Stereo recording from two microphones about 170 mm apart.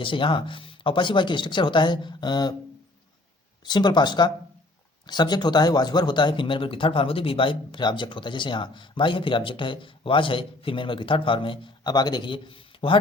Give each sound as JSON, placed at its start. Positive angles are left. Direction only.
{"t": 0.0, "sound": "speech", "side_deg": 30}
{"t": 3.6, "sound": "speech", "side_deg": 25}